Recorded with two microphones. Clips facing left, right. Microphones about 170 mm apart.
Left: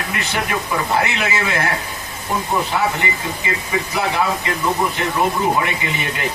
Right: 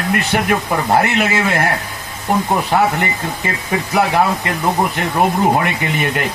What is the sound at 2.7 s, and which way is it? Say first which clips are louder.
Speech: right 5 dB; 55° right (ahead or behind).